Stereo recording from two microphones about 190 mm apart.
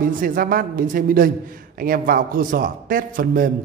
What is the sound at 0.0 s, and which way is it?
A man's voice, 50° right (ahead or behind).